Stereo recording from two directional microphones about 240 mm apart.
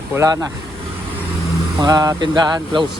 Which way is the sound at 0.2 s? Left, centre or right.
Centre.